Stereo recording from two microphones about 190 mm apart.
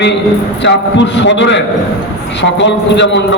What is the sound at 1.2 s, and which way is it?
A man's voice, 70° left (ahead or behind).